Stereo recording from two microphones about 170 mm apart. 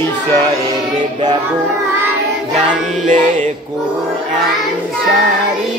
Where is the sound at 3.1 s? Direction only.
45° right (ahead or behind).